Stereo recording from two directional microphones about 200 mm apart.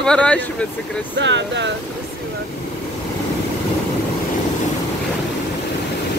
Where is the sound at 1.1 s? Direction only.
65° right (ahead or behind).